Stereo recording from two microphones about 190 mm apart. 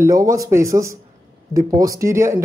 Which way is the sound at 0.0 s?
15° right (ahead or behind).